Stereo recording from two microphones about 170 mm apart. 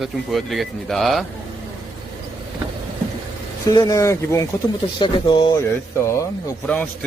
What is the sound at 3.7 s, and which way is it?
Speech, 20° left (ahead or behind).